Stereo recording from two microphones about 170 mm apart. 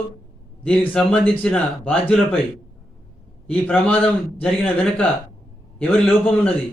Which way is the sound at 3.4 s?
10° left (ahead or behind).